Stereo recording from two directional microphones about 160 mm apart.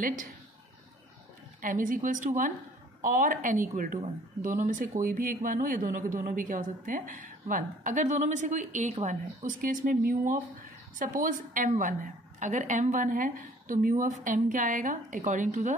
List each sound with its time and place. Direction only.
0.0 s a woman's voice: 55° right (ahead or behind)
1.6 s a woman's voice: 55° right (ahead or behind)